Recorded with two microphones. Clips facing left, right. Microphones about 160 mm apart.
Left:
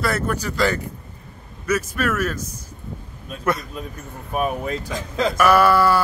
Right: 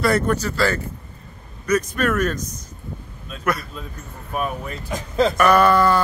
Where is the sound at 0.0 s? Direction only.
Centre (ahead or behind).